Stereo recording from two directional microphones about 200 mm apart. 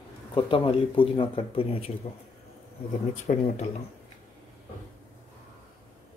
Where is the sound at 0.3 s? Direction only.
25° left (ahead or behind).